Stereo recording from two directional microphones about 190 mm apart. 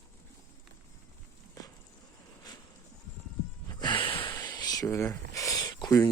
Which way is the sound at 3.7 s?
25° left (ahead or behind).